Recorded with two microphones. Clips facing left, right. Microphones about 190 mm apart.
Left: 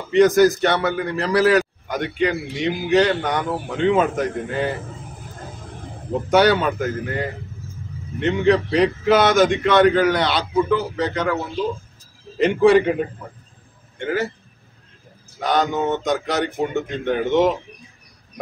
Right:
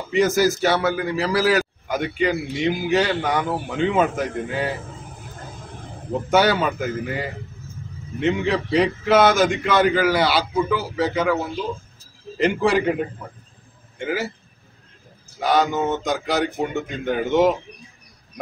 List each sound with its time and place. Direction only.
0.1 s a man's voice: 5° right (ahead or behind)
6.3 s a man's voice: centre (ahead or behind)
12.4 s a man's voice: centre (ahead or behind)
13.9 s a man's voice: 5° right (ahead or behind)
15.4 s a man's voice: 5° right (ahead or behind)